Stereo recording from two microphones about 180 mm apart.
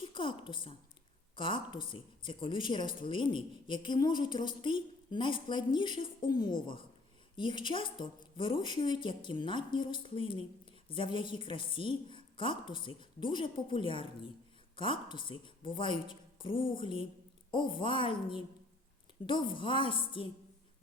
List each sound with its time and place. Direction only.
0.1 s a woman's voice: 25° left (ahead or behind)
1.9 s a woman's voice: 30° left (ahead or behind)